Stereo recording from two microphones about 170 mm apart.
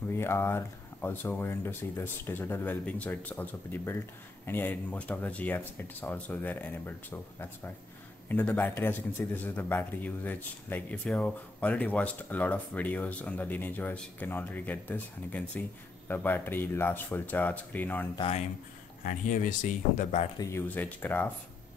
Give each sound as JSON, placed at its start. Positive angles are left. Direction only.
{"t": 0.1, "sound": "speech", "side_deg": 15}
{"t": 18.1, "sound": "speech", "side_deg": 30}
{"t": 19.0, "sound": "speech", "side_deg": 50}
{"t": 20.3, "sound": "speech", "side_deg": 15}